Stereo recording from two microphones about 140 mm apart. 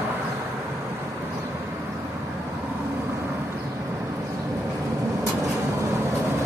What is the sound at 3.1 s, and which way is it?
Vehicle, 15° right (ahead or behind).